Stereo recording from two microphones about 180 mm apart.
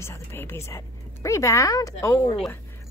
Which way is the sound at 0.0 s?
15° left (ahead or behind).